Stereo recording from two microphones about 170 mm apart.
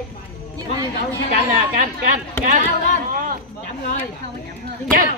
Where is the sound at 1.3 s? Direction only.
55° right (ahead or behind).